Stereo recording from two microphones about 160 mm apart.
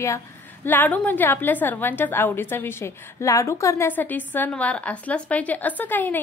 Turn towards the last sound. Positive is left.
turn(degrees=10)  # may be behind; listen again after turning